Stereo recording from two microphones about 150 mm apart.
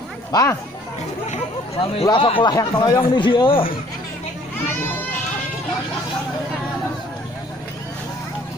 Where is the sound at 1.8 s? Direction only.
35° left (ahead or behind).